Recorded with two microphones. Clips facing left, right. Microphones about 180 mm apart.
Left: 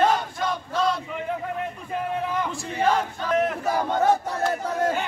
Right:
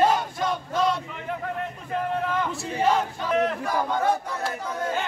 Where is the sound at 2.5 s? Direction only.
5° right (ahead or behind).